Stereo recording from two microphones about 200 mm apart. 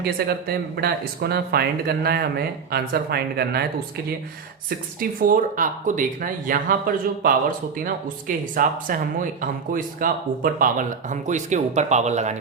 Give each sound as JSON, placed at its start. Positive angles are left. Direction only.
{"t": 0.0, "sound": "speech", "side_deg": -50}
{"t": 4.9, "sound": "speech", "side_deg": -45}